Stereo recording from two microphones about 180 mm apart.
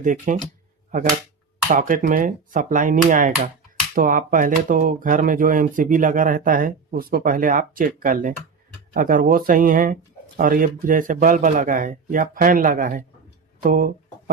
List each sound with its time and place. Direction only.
0.0 s speech: 45° right (ahead or behind)
1.6 s speech: 50° right (ahead or behind)